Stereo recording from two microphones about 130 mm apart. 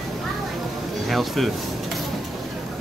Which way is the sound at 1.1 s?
Centre (ahead or behind).